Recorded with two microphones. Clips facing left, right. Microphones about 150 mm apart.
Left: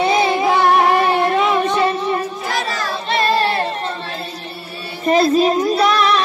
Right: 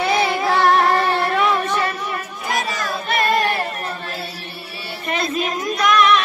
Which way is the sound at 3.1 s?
25° left (ahead or behind).